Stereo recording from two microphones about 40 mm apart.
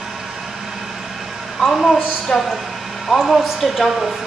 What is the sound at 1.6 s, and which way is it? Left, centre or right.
Speech, centre.